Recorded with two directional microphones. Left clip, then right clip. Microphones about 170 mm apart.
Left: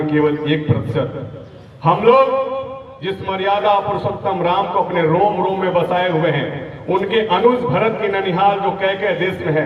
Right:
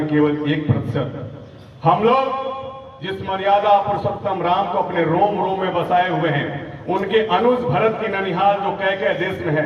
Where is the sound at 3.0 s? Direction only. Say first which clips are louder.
Left 2 dB; 15° left (ahead or behind).